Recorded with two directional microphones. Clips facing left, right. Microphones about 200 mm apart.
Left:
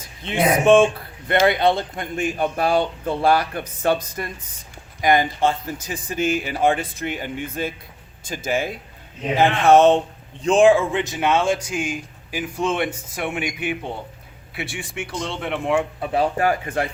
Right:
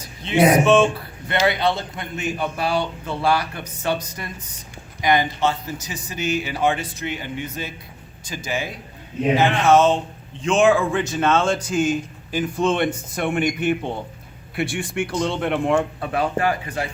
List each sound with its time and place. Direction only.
0.0 s speech: 50° left (ahead or behind)
10.4 s a man's voice: 30° left (ahead or behind); by 15.8 s centre (ahead or behind)
16.4 s speech: 45° left (ahead or behind)